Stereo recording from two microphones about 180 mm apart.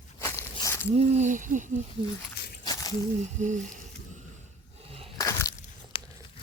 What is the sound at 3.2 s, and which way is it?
Speech, 40° right (ahead or behind).